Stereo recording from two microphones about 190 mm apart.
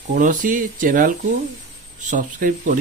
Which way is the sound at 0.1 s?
40° right (ahead or behind).